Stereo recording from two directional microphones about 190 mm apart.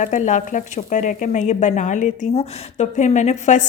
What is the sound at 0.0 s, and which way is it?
Speech, 40° left (ahead or behind).